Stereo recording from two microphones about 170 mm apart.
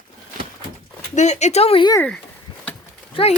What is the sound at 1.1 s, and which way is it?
Speech, 40° left (ahead or behind).